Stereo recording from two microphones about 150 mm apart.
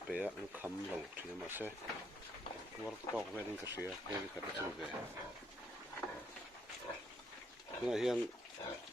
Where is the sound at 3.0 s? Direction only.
35° left (ahead or behind).